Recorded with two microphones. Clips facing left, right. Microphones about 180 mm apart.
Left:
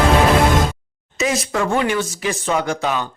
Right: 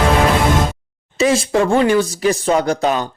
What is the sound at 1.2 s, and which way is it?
Speech, 30° right (ahead or behind).